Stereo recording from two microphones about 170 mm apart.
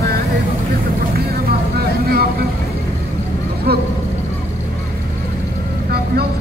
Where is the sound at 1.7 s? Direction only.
65° right (ahead or behind).